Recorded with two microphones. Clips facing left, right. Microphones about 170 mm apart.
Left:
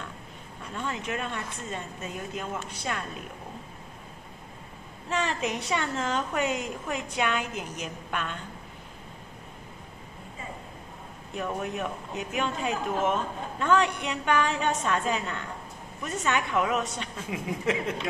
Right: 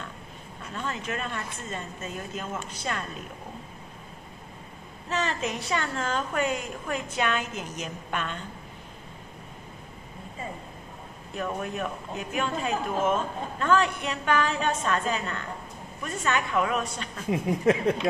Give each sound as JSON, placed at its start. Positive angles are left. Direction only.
{"t": 0.7, "sound": "a man's voice", "side_deg": 15}
{"t": 5.1, "sound": "a man's voice", "side_deg": 15}
{"t": 11.3, "sound": "a man's voice", "side_deg": 15}
{"t": 17.3, "sound": "speech", "side_deg": -35}